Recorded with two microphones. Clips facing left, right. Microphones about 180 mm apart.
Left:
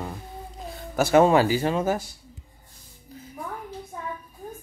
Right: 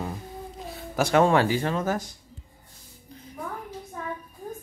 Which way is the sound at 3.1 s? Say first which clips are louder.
Left 2 dB; 5° left (ahead or behind).